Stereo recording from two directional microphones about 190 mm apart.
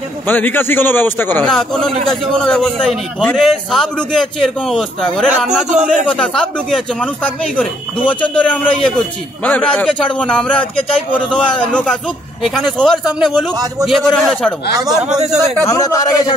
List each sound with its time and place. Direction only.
0.3 s a man's voice: 10° left (ahead or behind)
8.1 s a man's voice: 5° left (ahead or behind)
15.1 s a man's voice: 20° right (ahead or behind)
15.6 s a man's voice: 15° left (ahead or behind)